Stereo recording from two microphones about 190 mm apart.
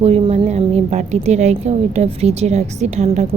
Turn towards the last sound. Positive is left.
turn(degrees=-35)  # may be behind; listen again after turning